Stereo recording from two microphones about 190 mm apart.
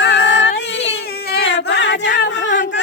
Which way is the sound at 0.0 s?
65° left (ahead or behind).